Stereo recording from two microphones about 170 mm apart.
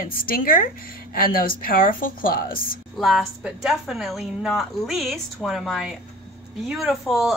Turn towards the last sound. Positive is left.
turn(degrees=0)  # may be behind; listen again after turning